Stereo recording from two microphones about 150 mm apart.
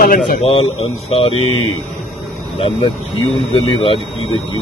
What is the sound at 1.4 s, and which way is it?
Speech, 40° right (ahead or behind).